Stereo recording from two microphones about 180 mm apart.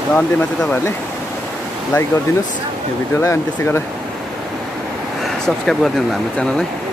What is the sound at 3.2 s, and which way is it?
Speech, 15° left (ahead or behind).